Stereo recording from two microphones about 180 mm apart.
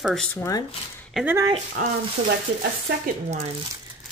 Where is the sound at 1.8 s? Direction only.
45° right (ahead or behind).